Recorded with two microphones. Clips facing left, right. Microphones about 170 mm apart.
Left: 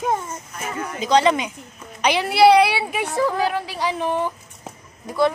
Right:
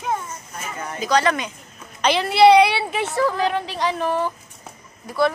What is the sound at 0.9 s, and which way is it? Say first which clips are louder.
A woman's voice: left 2 dB; 20° left (ahead or behind).